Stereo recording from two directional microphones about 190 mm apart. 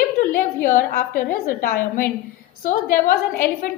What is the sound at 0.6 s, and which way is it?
Speech, 45° left (ahead or behind).